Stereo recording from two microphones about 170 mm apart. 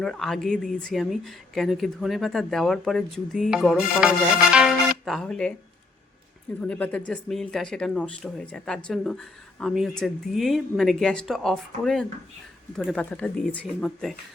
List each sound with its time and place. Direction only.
0.0 s speech: centre (ahead or behind)
6.6 s speech: 10° left (ahead or behind)